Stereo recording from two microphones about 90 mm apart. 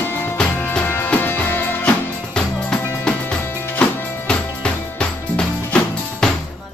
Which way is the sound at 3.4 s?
25° left (ahead or behind).